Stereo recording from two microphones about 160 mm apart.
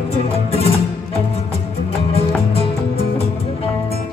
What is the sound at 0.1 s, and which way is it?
Music, 40° left (ahead or behind).